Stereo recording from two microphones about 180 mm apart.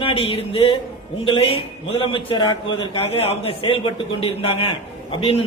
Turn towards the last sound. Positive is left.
turn(degrees=30)  # may be behind; listen again after turning